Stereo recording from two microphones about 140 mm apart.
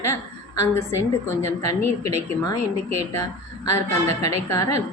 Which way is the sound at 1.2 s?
20° left (ahead or behind).